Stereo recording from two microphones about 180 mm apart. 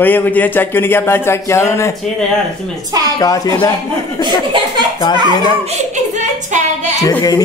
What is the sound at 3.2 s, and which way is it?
Speech, 20° left (ahead or behind).